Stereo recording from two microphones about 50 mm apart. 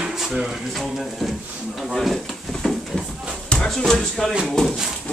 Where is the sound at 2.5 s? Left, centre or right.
Centre.